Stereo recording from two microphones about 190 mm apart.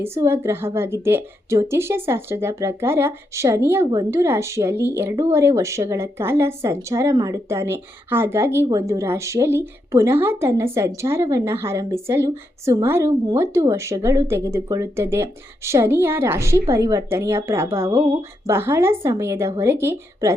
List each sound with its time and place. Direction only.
0.0 s a woman's voice: 15° right (ahead or behind)